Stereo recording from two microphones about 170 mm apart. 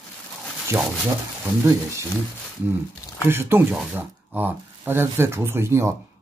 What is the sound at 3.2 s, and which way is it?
Speech, 15° right (ahead or behind).